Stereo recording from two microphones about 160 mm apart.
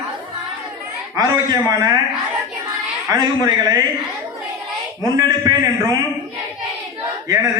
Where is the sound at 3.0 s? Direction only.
25° right (ahead or behind).